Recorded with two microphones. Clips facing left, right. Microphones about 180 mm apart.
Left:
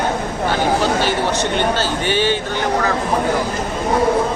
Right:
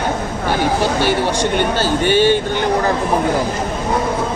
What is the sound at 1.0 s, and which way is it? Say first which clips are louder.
Speech: right 2 dB; 10° right (ahead or behind).